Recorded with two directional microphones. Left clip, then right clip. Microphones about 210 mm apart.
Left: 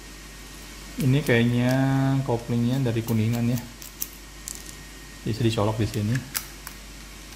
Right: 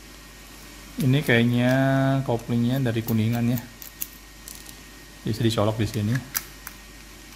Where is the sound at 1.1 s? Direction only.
20° right (ahead or behind).